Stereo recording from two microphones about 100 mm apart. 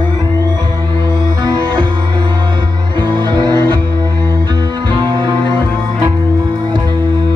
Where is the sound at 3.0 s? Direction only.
50° right (ahead or behind).